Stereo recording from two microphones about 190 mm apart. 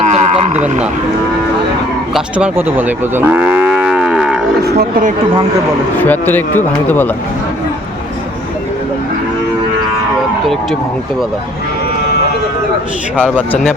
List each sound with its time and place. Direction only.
0.0 s a sound: 40° right (ahead or behind)
2.1 s cattle: 5° right (ahead or behind)
4.6 s speech: 50° right (ahead or behind)
6.0 s speech: 10° left (ahead or behind)
13.1 s speech: 10° left (ahead or behind)